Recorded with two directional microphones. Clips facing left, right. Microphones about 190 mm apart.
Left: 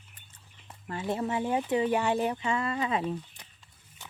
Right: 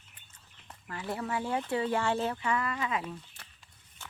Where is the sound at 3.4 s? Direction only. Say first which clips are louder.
Left 1 dB; 15° left (ahead or behind).